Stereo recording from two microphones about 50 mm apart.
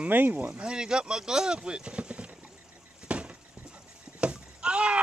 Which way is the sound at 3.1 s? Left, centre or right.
Right.